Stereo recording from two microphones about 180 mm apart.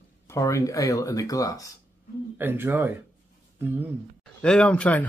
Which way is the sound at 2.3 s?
10° right (ahead or behind).